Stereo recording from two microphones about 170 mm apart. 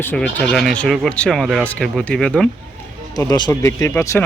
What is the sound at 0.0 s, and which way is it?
Speech, 10° left (ahead or behind).